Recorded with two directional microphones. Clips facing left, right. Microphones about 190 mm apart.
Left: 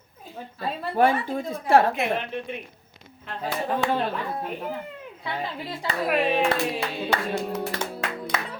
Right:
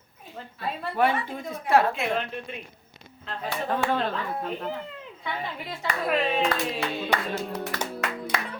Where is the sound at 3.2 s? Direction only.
10° left (ahead or behind).